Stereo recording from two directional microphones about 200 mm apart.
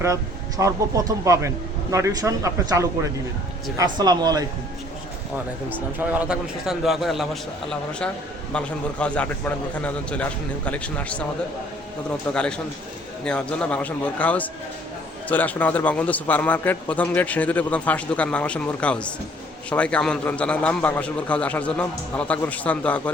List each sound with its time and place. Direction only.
0.0 s speech: 15° right (ahead or behind)
5.6 s a man's voice: 10° right (ahead or behind)
12.3 s a man's voice: 5° left (ahead or behind)